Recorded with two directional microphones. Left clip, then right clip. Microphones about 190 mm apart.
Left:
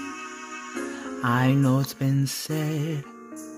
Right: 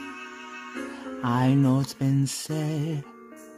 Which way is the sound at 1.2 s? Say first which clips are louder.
Left 1 dB; centre (ahead or behind).